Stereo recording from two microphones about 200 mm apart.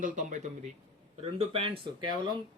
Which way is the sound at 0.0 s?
40° right (ahead or behind).